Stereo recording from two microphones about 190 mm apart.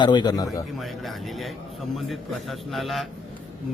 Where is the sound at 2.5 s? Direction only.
Centre (ahead or behind).